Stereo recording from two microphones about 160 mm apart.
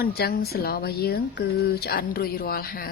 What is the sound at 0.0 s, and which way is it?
A woman's voice, 80° left.